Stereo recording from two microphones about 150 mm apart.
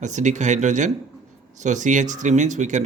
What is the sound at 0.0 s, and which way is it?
Speech, 55° right (ahead or behind).